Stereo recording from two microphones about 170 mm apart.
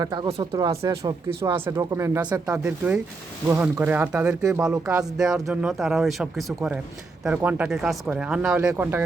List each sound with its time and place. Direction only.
0.0 s speech: 25° right (ahead or behind)
0.5 s speech: 20° right (ahead or behind)
2.6 s speech: 10° right (ahead or behind)